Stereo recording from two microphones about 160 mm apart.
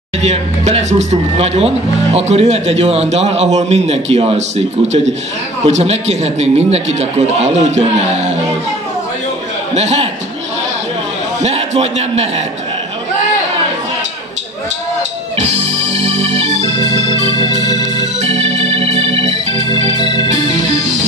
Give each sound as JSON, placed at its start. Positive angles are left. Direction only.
{"t": 0.2, "sound": "a man's voice", "side_deg": -45}
{"t": 9.8, "sound": "a man's voice", "side_deg": -40}
{"t": 11.4, "sound": "a man's voice", "side_deg": -40}
{"t": 15.3, "sound": "organ", "side_deg": -40}